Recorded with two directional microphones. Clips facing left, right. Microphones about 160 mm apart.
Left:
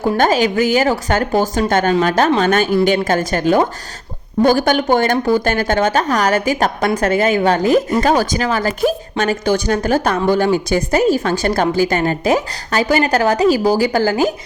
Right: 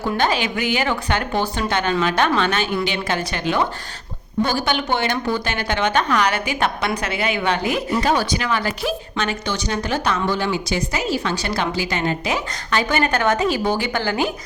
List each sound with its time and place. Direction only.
0.0 s a woman's voice: 45° left (ahead or behind)